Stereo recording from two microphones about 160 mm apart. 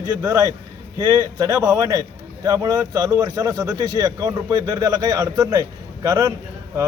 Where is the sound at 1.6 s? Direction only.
20° right (ahead or behind).